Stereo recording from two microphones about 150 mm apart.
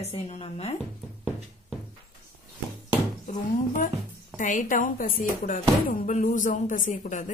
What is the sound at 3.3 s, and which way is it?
Speech, 60° left (ahead or behind).